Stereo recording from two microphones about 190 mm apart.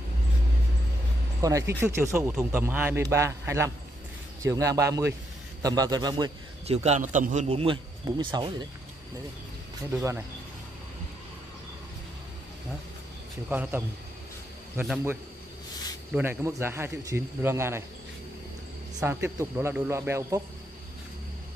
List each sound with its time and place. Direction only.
1.4 s a man's voice: 20° right (ahead or behind)
6.8 s a man's voice: 40° right (ahead or behind)
13.5 s a man's voice: 10° right (ahead or behind)
18.9 s a man's voice: 10° right (ahead or behind)